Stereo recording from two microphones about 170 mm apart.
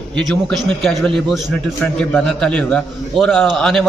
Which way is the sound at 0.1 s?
5° left (ahead or behind).